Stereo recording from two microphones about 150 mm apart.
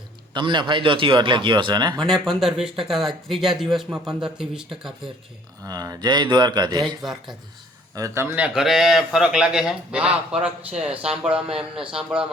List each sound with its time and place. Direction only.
0.3 s speech: 30° right (ahead or behind)
2.0 s speech: centre (ahead or behind)
5.6 s speech: 25° right (ahead or behind)
6.8 s speech: centre (ahead or behind)
7.9 s a man's voice: 20° right (ahead or behind)
8.5 s speech: 5° right (ahead or behind)